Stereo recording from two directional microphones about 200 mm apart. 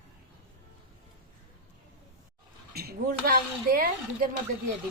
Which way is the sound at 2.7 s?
50° right (ahead or behind).